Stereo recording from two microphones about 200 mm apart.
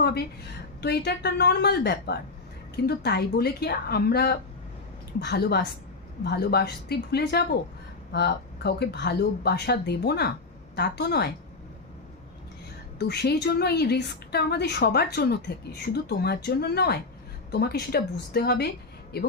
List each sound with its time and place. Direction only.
0.0 s a sound: 55° left (ahead or behind)
0.8 s a woman's voice: 55° left (ahead or behind)
13.0 s a woman's voice: 55° left (ahead or behind)